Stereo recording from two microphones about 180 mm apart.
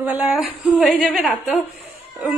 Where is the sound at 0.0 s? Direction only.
5° right (ahead or behind).